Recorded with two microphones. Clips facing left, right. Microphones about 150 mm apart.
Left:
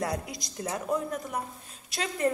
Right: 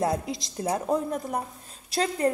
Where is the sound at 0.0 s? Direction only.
25° right (ahead or behind).